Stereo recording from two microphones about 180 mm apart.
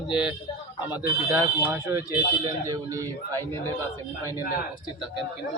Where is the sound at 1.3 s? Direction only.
15° right (ahead or behind).